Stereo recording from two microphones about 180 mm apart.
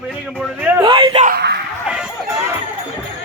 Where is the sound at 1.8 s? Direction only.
5° right (ahead or behind).